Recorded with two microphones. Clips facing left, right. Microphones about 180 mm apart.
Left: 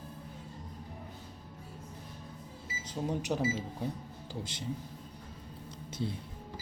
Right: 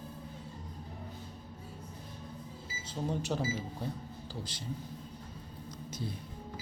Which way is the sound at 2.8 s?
15° left (ahead or behind).